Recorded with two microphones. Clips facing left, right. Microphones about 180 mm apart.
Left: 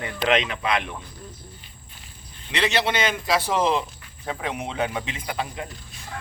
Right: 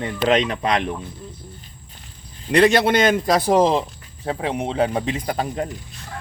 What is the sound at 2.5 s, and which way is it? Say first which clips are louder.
A man's voice: right 9 dB; 50° right (ahead or behind).